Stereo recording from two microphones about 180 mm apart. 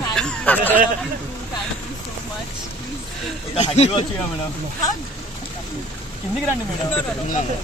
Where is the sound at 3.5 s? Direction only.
35° left (ahead or behind).